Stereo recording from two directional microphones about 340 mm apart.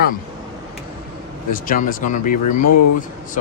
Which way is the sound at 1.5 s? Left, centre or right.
Left.